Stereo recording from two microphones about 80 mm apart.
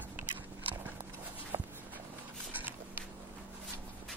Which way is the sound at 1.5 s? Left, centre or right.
Right.